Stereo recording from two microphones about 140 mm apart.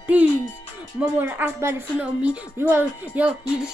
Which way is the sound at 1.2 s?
15° right (ahead or behind).